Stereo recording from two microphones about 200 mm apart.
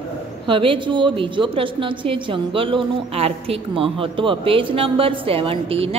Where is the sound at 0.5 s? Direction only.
25° right (ahead or behind).